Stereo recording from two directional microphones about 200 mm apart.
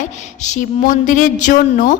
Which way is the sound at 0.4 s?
35° left (ahead or behind).